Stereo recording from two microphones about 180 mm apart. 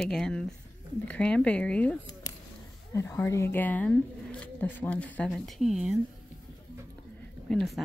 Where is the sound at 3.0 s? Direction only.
15° left (ahead or behind); by 5.9 s centre (ahead or behind).